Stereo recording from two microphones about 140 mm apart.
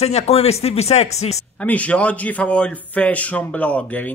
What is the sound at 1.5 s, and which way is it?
Speech, 10° left (ahead or behind).